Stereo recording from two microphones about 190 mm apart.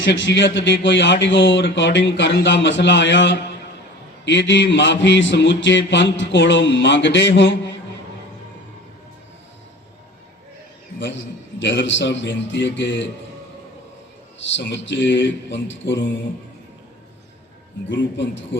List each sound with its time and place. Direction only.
0.0 s speech: 70° left (ahead or behind)
11.6 s speech: 70° left (ahead or behind)
14.5 s speech: 70° left (ahead or behind)
17.8 s speech: 75° left (ahead or behind)